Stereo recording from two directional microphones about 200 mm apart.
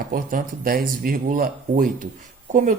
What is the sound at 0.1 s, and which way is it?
Speech, 45° right (ahead or behind).